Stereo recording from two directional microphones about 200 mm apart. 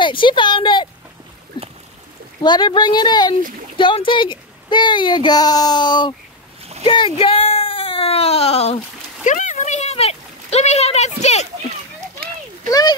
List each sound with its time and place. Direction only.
0.0 s speech: 25° left (ahead or behind)
2.4 s speech: 20° left (ahead or behind)
6.8 s a sound: 25° left (ahead or behind)